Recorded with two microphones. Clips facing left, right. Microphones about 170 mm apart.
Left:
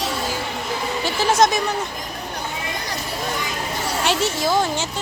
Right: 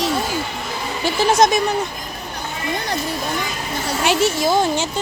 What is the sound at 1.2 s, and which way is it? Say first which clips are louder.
Speech: right 2 dB; 15° right (ahead or behind).